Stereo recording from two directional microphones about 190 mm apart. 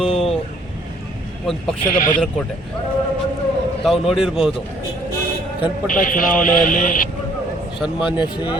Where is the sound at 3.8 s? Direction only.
Centre (ahead or behind).